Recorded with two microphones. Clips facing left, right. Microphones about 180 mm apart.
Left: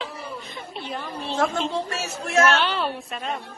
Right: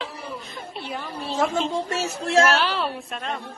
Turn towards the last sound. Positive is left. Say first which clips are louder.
# left 1 dB
turn(degrees=0)  # may be behind; listen again after turning